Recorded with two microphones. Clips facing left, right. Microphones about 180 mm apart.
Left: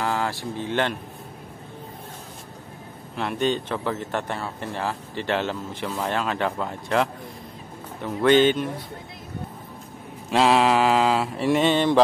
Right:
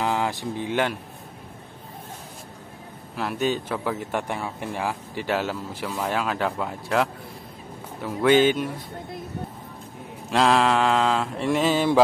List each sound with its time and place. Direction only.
0.0 s speech: 15° right (ahead or behind)
3.2 s speech: 5° right (ahead or behind)
5.9 s mantra: 10° right (ahead or behind)
8.0 s speech: 5° right (ahead or behind)
10.3 s mantra: centre (ahead or behind)